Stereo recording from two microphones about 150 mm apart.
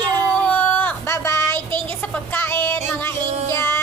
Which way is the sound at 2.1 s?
15° left (ahead or behind).